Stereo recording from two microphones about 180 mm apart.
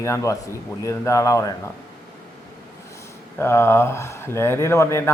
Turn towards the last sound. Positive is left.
turn(degrees=15)  # may be behind; listen again after turning